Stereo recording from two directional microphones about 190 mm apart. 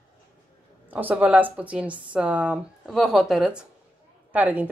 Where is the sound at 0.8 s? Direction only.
10° right (ahead or behind).